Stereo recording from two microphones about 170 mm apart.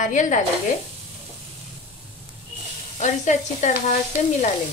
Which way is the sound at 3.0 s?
45° left (ahead or behind).